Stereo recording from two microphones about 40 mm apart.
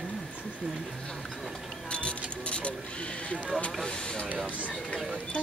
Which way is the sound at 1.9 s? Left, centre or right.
Left.